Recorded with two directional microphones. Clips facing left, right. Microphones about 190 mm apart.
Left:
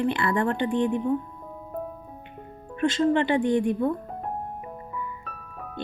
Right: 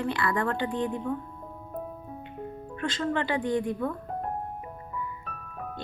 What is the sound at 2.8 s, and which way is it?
Speech, 20° left (ahead or behind).